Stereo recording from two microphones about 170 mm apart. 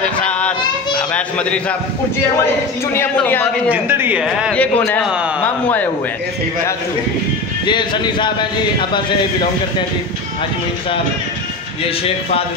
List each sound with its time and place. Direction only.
0.2 s yodeling: 5° left (ahead or behind)
0.9 s a man's voice: 5° left (ahead or behind)
2.9 s a man's voice: 10° left (ahead or behind)
3.7 s speech: 10° right (ahead or behind)
4.6 s a man's voice: 10° left (ahead or behind)
5.0 s a man's voice: 5° right (ahead or behind)
5.4 s a man's voice: 10° left (ahead or behind)
7.6 s speech: 25° left (ahead or behind)